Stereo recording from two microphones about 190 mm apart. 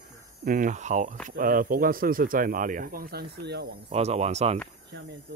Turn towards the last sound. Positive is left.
turn(degrees=-35)  # may be behind; listen again after turning